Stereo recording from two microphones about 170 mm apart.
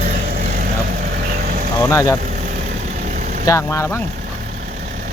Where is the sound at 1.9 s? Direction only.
20° left (ahead or behind).